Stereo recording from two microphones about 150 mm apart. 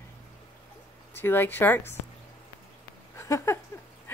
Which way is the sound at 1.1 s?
15° left (ahead or behind).